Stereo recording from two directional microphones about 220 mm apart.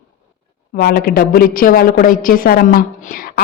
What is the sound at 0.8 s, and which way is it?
A woman's voice, 45° left (ahead or behind).